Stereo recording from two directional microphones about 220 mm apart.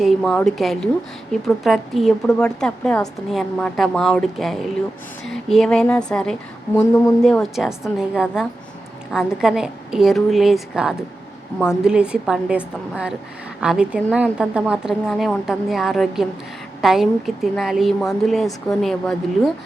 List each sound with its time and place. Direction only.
0.0 s a woman's voice: centre (ahead or behind)